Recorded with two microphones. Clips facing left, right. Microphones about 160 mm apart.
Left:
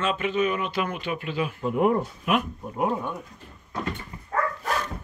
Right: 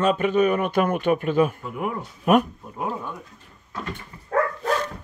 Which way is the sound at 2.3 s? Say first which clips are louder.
Right 7 dB; 40° right (ahead or behind).